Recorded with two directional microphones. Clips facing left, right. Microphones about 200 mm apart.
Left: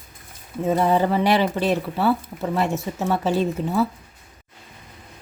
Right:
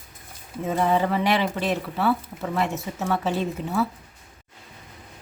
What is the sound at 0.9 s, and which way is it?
A woman's voice, 35° left (ahead or behind).